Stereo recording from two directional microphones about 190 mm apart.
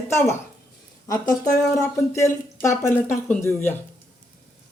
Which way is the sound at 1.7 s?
15° left (ahead or behind).